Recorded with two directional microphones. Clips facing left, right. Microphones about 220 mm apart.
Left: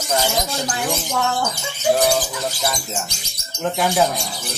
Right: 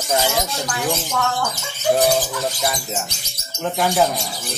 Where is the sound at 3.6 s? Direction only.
Centre (ahead or behind).